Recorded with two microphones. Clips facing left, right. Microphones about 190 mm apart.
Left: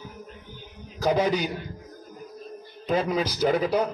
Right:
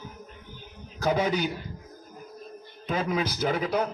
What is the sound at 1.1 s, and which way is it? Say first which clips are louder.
Speech: left 3 dB; 40° left (ahead or behind).